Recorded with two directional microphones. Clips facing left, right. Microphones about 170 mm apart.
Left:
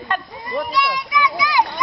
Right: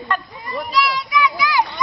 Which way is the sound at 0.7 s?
20° left (ahead or behind).